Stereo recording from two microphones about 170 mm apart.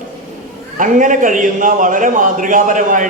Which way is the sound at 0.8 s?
50° right (ahead or behind).